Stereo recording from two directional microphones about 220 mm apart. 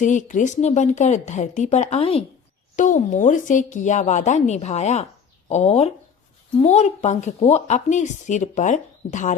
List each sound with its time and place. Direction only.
0.0 s a woman's voice: 35° left (ahead or behind)